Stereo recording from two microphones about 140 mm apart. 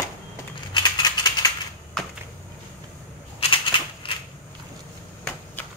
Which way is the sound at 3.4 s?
40° left (ahead or behind).